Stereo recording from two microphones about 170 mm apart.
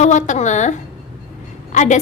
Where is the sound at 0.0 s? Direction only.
45° left (ahead or behind).